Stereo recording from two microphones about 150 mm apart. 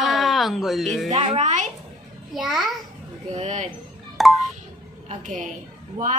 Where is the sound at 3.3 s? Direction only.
50° right (ahead or behind).